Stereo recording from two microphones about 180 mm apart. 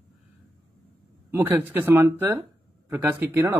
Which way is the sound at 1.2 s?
10° right (ahead or behind).